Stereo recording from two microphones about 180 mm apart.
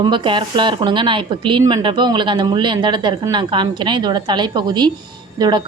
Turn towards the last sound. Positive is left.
turn(degrees=-25)  # may be behind; listen again after turning